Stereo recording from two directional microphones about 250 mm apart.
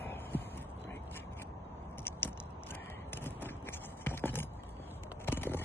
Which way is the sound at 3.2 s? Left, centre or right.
Centre.